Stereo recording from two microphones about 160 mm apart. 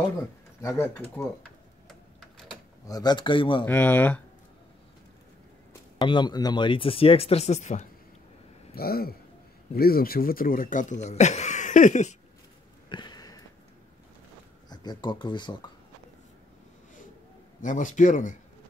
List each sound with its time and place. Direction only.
0.2 s speech: 20° left (ahead or behind)
2.9 s speech: 25° left (ahead or behind)
3.6 s speech: 15° left (ahead or behind)
5.7 s speech: 25° left (ahead or behind); by 7.8 s 45° left (ahead or behind)
8.7 s speech: 70° left (ahead or behind); by 12.2 s 45° left (ahead or behind)
12.9 s sniff: 25° left (ahead or behind)
14.7 s speech: 25° left (ahead or behind)
17.6 s speech: 55° left (ahead or behind)